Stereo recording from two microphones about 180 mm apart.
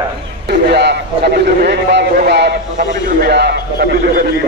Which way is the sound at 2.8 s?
45° right (ahead or behind).